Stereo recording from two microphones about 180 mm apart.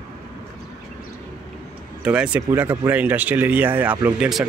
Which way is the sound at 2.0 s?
5° right (ahead or behind).